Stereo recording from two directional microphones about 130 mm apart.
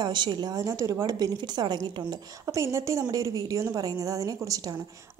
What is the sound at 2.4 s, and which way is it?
A woman's voice, 20° right (ahead or behind).